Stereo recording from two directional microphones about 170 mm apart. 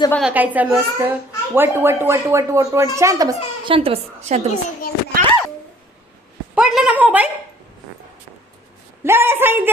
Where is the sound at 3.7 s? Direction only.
35° right (ahead or behind).